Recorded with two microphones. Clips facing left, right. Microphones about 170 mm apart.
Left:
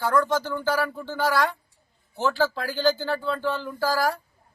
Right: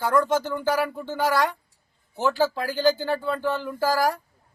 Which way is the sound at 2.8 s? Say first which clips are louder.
Right 1 dB; 15° right (ahead or behind).